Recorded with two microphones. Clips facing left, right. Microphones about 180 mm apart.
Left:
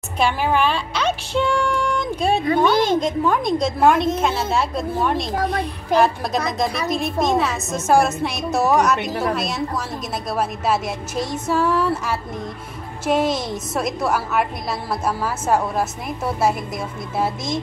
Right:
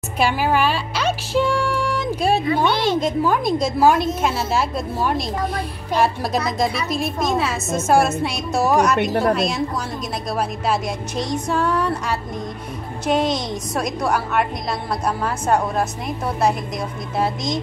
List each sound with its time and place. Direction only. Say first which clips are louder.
0.2 s speech: even; 5° right (ahead or behind)
2.0 s music: right 1 dB; 5° right (ahead or behind)
2.4 s speech: left 2 dB; 45° left (ahead or behind)
3.0 s a woman's voice: even; 5° right (ahead or behind)